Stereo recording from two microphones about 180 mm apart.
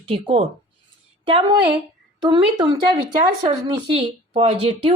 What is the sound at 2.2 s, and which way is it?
A woman's voice, 25° right (ahead or behind).